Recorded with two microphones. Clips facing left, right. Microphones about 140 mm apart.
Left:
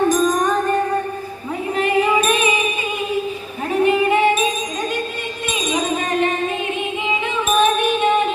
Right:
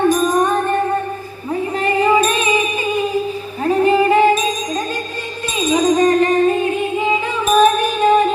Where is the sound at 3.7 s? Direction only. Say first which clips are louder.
Right 3 dB; 35° right (ahead or behind).